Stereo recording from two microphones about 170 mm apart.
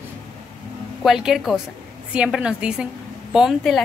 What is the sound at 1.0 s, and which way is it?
A woman's voice, centre (ahead or behind).